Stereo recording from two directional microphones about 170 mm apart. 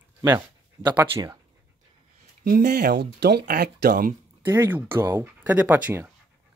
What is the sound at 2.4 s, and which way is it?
Speech, 55° right (ahead or behind).